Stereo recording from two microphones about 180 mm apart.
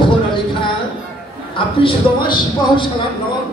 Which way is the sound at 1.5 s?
25° left (ahead or behind).